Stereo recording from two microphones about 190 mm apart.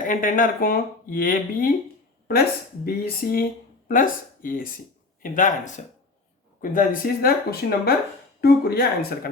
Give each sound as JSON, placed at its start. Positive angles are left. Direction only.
{"t": 0.0, "sound": "speech", "side_deg": 45}